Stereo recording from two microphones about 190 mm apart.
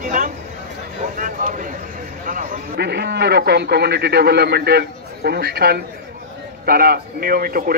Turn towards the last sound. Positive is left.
turn(degrees=-50)  # may be behind; listen again after turning